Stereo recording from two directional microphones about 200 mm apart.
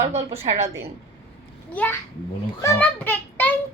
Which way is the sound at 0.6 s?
15° right (ahead or behind).